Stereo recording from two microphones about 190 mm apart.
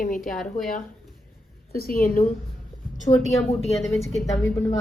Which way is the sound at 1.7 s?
50° left (ahead or behind).